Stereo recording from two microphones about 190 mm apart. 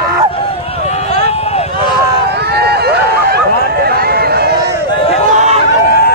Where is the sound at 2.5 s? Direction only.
55° right (ahead or behind).